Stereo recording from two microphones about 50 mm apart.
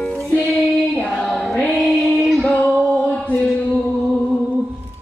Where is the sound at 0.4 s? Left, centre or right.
Centre.